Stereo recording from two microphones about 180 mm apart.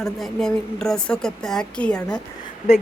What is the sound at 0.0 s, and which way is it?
A woman's voice, centre (ahead or behind).